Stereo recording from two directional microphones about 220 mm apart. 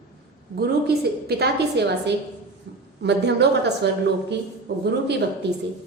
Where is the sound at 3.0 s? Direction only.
50° right (ahead or behind).